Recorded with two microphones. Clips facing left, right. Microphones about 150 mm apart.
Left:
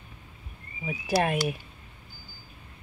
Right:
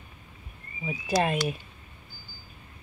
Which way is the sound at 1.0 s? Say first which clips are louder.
Even; 10° left (ahead or behind).